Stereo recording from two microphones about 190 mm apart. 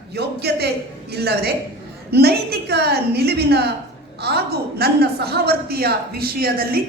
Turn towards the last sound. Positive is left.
turn(degrees=-55)  # may be behind; listen again after turning